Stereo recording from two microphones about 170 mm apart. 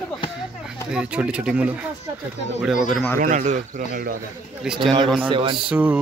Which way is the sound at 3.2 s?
45° right (ahead or behind).